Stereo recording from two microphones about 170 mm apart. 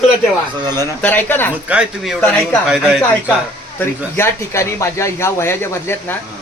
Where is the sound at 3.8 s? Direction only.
15° left (ahead or behind).